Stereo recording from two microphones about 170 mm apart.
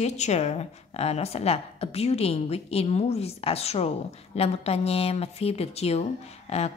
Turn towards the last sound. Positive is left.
turn(degrees=40)  # may be behind; listen again after turning